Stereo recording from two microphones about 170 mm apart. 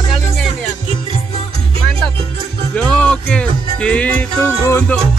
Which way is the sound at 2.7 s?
5° left (ahead or behind).